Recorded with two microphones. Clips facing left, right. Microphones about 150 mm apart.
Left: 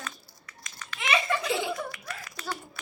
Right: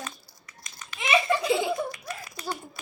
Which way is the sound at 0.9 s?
20° right (ahead or behind).